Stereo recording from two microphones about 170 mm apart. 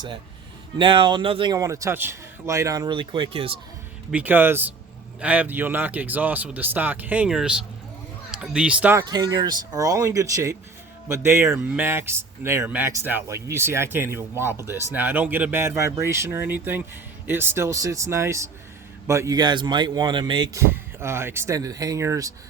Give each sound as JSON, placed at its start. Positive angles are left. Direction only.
{"t": 0.8, "sound": "speech", "side_deg": -30}
{"t": 4.1, "sound": "speech", "side_deg": -10}
{"t": 9.0, "sound": "speech", "side_deg": -25}